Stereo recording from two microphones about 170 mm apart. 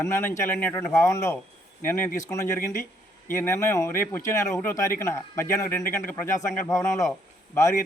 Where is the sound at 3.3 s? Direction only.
15° left (ahead or behind).